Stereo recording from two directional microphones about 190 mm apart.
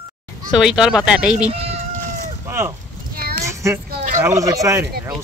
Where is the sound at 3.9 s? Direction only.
40° right (ahead or behind).